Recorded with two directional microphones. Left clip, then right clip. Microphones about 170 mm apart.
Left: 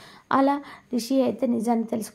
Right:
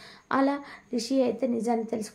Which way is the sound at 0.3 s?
25° left (ahead or behind).